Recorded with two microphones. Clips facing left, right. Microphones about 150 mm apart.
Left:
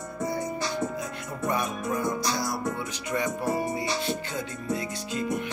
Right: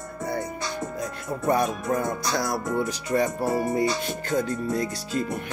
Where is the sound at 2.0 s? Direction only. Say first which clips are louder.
Right 2 dB; 55° right (ahead or behind).